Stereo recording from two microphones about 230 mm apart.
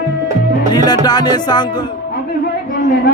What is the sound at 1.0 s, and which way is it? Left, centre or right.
Music, centre.